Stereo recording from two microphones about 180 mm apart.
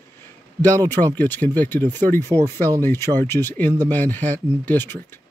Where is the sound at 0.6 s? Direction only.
10° left (ahead or behind).